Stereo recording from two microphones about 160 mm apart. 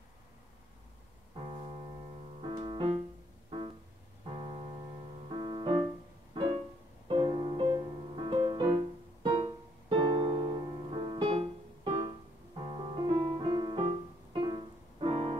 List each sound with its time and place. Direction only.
2.4 s music: 30° right (ahead or behind)
5.3 s piano: 30° right (ahead or behind)
6.3 s music: 30° right (ahead or behind)
13.0 s music: 30° right (ahead or behind)